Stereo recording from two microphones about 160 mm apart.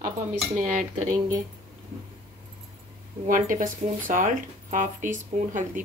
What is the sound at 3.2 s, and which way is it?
Speech, 55° right (ahead or behind).